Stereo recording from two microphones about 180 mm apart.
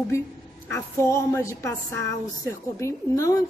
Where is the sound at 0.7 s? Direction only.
15° left (ahead or behind).